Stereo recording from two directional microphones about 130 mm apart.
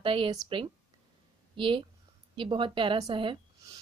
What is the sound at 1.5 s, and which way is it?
A woman's voice, 40° right (ahead or behind).